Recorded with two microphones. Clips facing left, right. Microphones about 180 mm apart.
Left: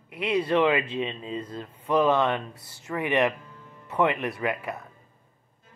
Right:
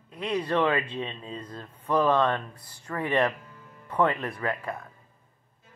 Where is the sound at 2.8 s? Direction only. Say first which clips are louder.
Left 1 dB; 20° left (ahead or behind).